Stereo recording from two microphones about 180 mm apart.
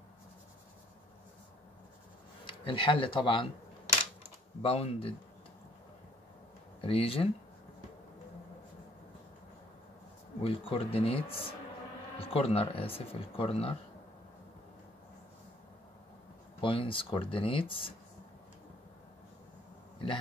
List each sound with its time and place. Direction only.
2.4 s speech: 30° left (ahead or behind)
4.6 s speech: 35° left (ahead or behind)
6.8 s speech: 30° left (ahead or behind)
10.4 s speech: 30° left (ahead or behind)
16.6 s speech: 30° left (ahead or behind)